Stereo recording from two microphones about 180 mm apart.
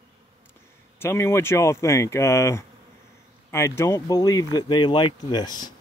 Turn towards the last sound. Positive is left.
turn(degrees=25)  # may be behind; listen again after turning